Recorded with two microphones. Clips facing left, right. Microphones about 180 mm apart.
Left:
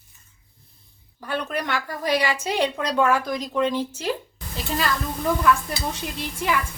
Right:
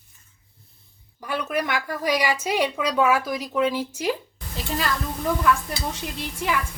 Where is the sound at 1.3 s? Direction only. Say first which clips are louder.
Right 1 dB; 10° right (ahead or behind).